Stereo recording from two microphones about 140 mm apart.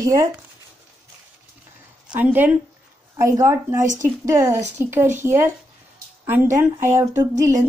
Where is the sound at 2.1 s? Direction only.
15° right (ahead or behind).